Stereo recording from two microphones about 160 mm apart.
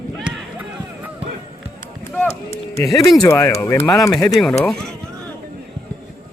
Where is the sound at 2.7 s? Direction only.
20° left (ahead or behind).